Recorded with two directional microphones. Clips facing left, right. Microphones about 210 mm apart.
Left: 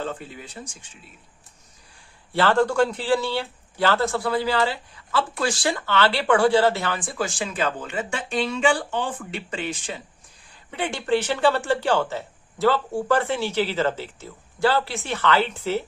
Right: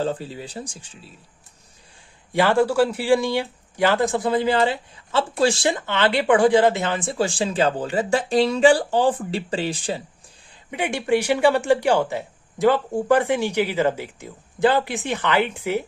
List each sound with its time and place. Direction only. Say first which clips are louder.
0.0 s speech: right 6 dB; 35° right (ahead or behind)
2.3 s speech: right 2 dB; 10° right (ahead or behind); by 10.0 s 35° right (ahead or behind)
10.7 s speech: right 2 dB; 15° right (ahead or behind)